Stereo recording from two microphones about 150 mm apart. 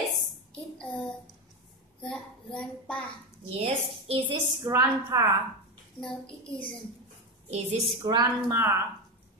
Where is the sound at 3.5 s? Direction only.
40° right (ahead or behind).